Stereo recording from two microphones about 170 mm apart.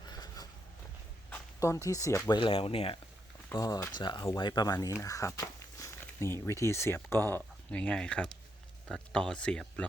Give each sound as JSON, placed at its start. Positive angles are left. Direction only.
{"t": 0.0, "sound": "a sound", "side_deg": 25}
{"t": 1.3, "sound": "speech", "side_deg": 15}
{"t": 2.3, "sound": "speech", "side_deg": 30}
{"t": 3.5, "sound": "speech", "side_deg": 20}